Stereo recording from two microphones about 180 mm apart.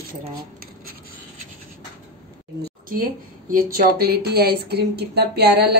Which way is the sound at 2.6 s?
55° right (ahead or behind).